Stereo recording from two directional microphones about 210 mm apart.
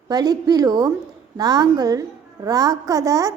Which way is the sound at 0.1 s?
20° right (ahead or behind).